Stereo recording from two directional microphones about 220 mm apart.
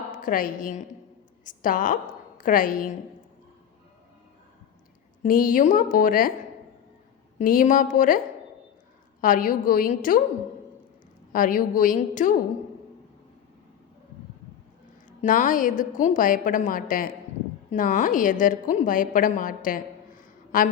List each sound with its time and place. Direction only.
0.1 s a woman's voice: 40° left (ahead or behind)
5.2 s a woman's voice: 40° left (ahead or behind)
7.3 s a woman's voice: 35° left (ahead or behind)
9.2 s a woman's voice: 40° left (ahead or behind)
11.3 s a woman's voice: 40° left (ahead or behind)
15.2 s a woman's voice: 35° left (ahead or behind)